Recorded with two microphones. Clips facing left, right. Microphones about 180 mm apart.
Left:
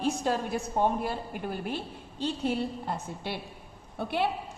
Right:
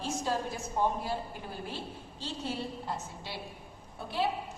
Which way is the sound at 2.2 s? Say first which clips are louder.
Left 7 dB; 60° left (ahead or behind).